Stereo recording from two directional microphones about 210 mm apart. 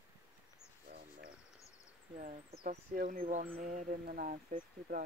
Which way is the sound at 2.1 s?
40° right (ahead or behind).